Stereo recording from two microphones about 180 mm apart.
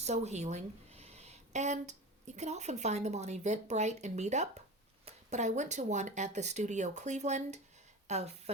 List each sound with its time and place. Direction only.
0.0 s a woman's voice: 40° right (ahead or behind)